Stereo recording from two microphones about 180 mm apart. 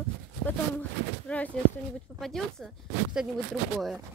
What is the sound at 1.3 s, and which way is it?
Speech, 5° left (ahead or behind).